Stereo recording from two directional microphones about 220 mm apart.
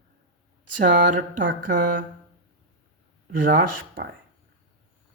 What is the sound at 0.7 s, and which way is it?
Speech, 35° right (ahead or behind).